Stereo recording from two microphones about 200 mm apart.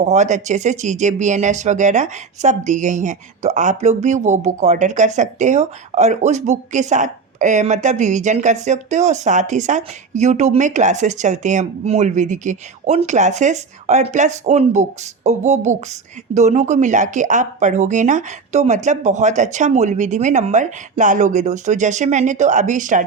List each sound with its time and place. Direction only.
0.0 s speech: 35° right (ahead or behind)